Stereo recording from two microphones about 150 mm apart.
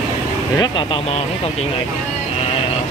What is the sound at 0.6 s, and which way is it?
Speech, 30° left (ahead or behind).